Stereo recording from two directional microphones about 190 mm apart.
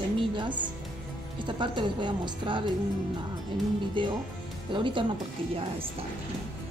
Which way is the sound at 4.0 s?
25° right (ahead or behind).